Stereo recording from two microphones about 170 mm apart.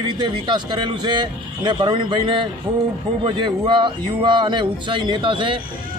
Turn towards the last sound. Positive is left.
turn(degrees=-30)  # may be behind; listen again after turning